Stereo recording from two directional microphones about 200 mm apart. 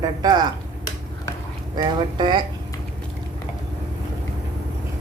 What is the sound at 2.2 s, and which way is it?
Speech, 25° right (ahead or behind).